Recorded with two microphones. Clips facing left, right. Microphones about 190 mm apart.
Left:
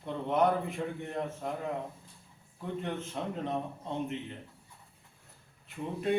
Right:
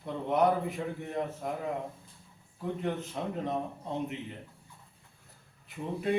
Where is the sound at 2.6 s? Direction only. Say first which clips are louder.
Right 3 dB; centre (ahead or behind).